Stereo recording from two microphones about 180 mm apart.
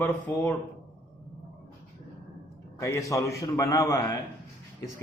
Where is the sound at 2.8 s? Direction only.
15° left (ahead or behind).